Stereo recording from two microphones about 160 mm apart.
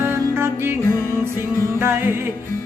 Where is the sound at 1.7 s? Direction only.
15° right (ahead or behind).